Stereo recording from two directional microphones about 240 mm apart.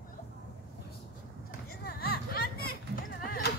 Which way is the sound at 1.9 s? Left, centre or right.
Left.